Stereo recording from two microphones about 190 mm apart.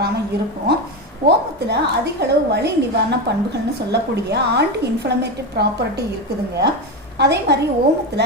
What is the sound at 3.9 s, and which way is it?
A woman's voice, 60° right (ahead or behind).